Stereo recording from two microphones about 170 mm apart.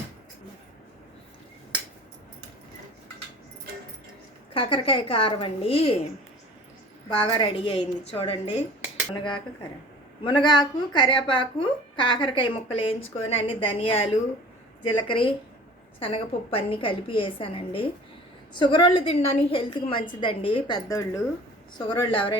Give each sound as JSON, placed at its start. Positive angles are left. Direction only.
{"t": 4.5, "sound": "a woman's voice", "side_deg": 30}
{"t": 7.2, "sound": "a woman's voice", "side_deg": 30}
{"t": 10.2, "sound": "a woman's voice", "side_deg": 25}